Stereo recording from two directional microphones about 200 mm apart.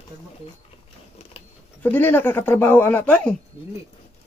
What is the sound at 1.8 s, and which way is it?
Speech, 10° left (ahead or behind).